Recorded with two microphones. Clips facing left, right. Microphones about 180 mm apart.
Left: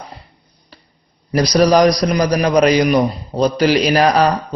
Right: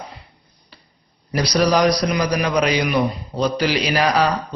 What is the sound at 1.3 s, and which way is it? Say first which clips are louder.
A man's voice: left 5 dB; 45° left (ahead or behind).